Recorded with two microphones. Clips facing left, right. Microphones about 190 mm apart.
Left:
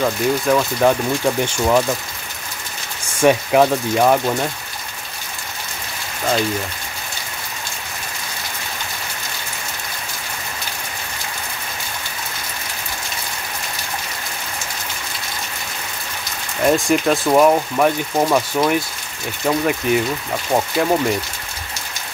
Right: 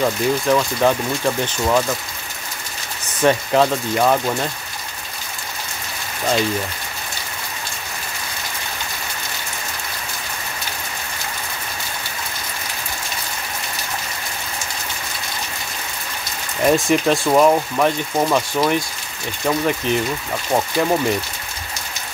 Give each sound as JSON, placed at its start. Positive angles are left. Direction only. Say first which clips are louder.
{"t": 0.0, "sound": "speech", "louder": "even", "side_deg": 5}
{"t": 3.1, "sound": "speech", "louder": "left 2 dB", "side_deg": 10}
{"t": 16.6, "sound": "speech", "louder": "even", "side_deg": 0}